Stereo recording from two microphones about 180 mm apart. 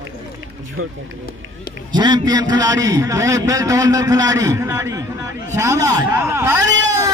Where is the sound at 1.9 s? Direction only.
25° right (ahead or behind).